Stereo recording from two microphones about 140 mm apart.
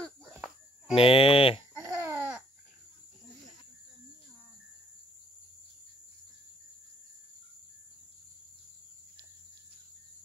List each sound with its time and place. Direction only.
0.8 s speech: 40° left (ahead or behind)
1.8 s babbling: 20° right (ahead or behind)